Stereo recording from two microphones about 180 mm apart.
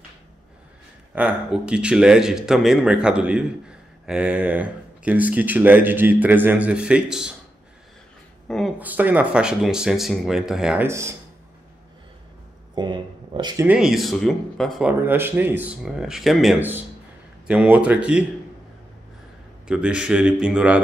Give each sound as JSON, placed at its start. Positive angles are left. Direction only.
{"t": 1.1, "sound": "speech", "side_deg": -5}
{"t": 8.5, "sound": "speech", "side_deg": 0}
{"t": 8.7, "sound": "speech", "side_deg": -10}
{"t": 10.9, "sound": "speech", "side_deg": -15}
{"t": 12.7, "sound": "speech", "side_deg": -25}
{"t": 13.7, "sound": "speech", "side_deg": -5}
{"t": 14.9, "sound": "speech", "side_deg": -10}
{"t": 19.7, "sound": "speech", "side_deg": -5}